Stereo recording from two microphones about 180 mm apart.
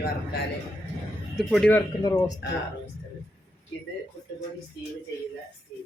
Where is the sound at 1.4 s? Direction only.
Centre (ahead or behind).